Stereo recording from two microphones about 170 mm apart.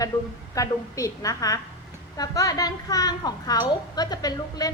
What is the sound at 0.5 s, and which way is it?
A woman's voice, 20° left (ahead or behind).